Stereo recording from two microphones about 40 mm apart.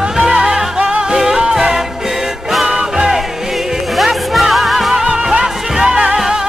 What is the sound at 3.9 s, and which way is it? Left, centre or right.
Music, centre.